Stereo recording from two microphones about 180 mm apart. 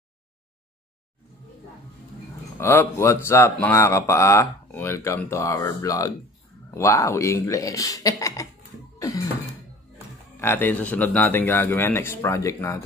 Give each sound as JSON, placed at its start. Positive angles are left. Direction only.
{"t": 2.6, "sound": "speech", "side_deg": 15}
{"t": 9.0, "sound": "music", "side_deg": 20}
{"t": 10.4, "sound": "speech", "side_deg": 10}